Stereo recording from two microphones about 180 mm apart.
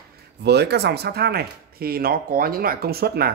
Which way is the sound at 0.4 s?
65° right (ahead or behind).